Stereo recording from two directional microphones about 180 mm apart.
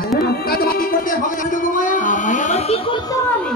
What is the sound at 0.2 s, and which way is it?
Music, 60° left (ahead or behind).